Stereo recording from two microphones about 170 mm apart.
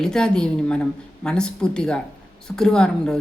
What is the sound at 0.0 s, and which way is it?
A woman's voice, 5° left (ahead or behind).